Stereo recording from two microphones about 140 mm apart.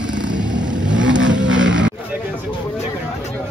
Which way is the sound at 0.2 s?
30° right (ahead or behind).